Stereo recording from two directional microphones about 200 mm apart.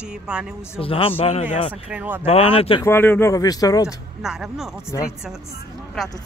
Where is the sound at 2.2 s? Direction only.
30° left (ahead or behind).